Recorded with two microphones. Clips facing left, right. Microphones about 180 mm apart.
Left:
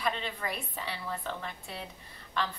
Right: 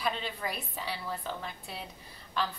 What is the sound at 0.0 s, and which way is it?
A woman's voice, 5° right (ahead or behind).